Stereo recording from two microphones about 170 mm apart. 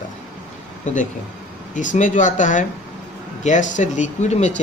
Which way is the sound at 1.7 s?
50° left (ahead or behind).